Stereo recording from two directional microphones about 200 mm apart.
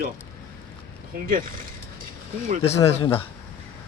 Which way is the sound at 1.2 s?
45° right (ahead or behind).